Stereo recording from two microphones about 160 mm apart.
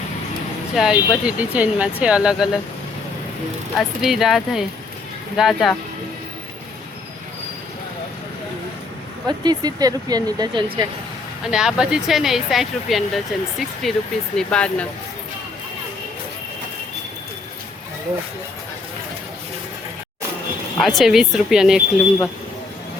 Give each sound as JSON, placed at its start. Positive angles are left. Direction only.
{"t": 0.8, "sound": "speech", "side_deg": -5}
{"t": 3.8, "sound": "speech", "side_deg": 0}
{"t": 9.2, "sound": "speech", "side_deg": -25}
{"t": 11.5, "sound": "speech", "side_deg": -5}
{"t": 20.8, "sound": "speech", "side_deg": 0}